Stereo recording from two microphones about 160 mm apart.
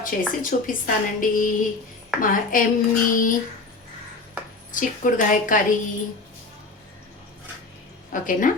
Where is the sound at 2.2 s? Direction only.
60° left (ahead or behind).